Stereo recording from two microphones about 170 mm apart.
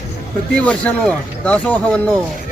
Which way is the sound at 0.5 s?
5° left (ahead or behind).